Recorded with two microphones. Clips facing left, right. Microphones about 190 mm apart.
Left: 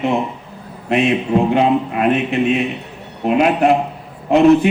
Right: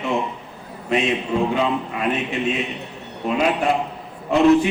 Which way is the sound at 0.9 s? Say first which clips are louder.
Left 5 dB; 55° left (ahead or behind).